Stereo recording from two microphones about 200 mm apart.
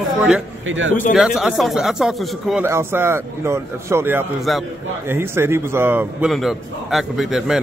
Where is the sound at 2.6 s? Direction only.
10° right (ahead or behind).